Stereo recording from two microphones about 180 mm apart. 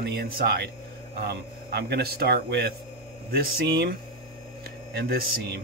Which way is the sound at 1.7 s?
65° right (ahead or behind).